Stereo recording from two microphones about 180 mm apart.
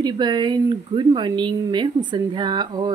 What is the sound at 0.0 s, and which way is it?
Speech, 25° right (ahead or behind).